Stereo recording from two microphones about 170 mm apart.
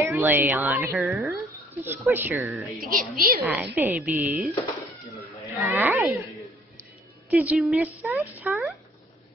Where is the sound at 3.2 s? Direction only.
55° right (ahead or behind).